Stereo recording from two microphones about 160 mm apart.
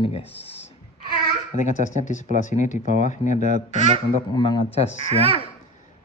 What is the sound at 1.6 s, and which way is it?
Speech, 50° left (ahead or behind).